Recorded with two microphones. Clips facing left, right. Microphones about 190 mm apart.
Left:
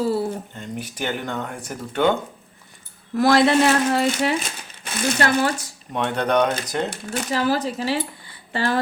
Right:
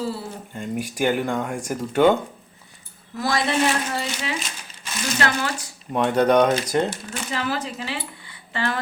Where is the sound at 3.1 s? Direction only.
65° left (ahead or behind).